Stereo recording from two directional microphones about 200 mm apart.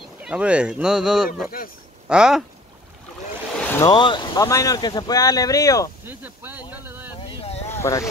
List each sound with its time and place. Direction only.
0.2 s speech: 5° right (ahead or behind)
3.5 s a sound: 5° left (ahead or behind)
3.8 s speech: 25° left (ahead or behind)
6.0 s a sound: 10° right (ahead or behind)
6.7 s vehicle: 10° right (ahead or behind)
7.7 s speech: 15° left (ahead or behind)